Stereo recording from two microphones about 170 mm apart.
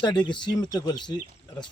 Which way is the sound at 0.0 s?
25° left (ahead or behind).